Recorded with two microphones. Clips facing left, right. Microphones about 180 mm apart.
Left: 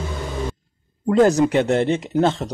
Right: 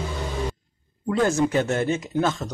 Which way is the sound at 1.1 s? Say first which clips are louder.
Left 6 dB; 35° left (ahead or behind).